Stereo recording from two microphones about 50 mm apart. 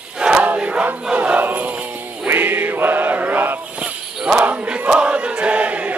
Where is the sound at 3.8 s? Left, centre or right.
Right.